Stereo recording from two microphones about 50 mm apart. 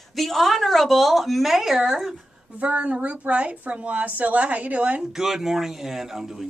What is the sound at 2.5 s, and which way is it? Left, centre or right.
A woman's voice, right.